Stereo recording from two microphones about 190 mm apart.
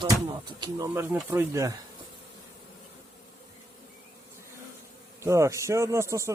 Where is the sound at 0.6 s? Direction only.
15° right (ahead or behind).